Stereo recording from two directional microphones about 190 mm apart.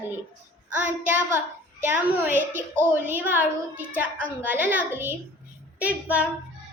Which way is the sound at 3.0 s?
10° right (ahead or behind).